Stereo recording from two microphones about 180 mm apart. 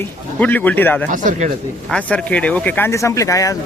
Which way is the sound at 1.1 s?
45° right (ahead or behind).